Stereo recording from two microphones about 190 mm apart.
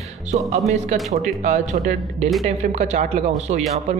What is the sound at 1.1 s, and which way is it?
Speech, 45° right (ahead or behind).